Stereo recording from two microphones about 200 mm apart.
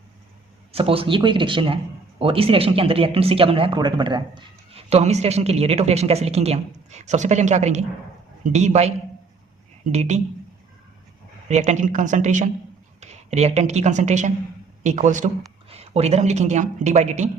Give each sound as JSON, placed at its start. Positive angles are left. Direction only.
{"t": 0.7, "sound": "a woman's voice", "side_deg": -30}
{"t": 9.9, "sound": "a woman's voice", "side_deg": -35}
{"t": 11.4, "sound": "a woman's voice", "side_deg": -35}